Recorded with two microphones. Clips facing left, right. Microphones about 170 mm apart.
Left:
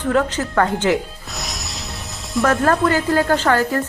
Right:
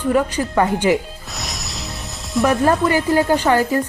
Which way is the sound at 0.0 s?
10° right (ahead or behind).